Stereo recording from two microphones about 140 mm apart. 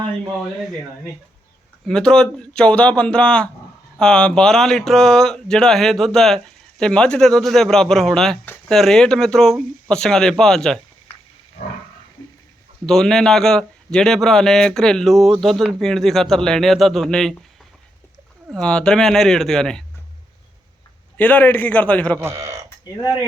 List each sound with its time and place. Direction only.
1.9 s a man's voice: 5° left (ahead or behind)
12.8 s a man's voice: 5° left (ahead or behind)
18.6 s a man's voice: 5° left (ahead or behind)
21.2 s speech: 10° left (ahead or behind)
22.2 s speech: 20° right (ahead or behind)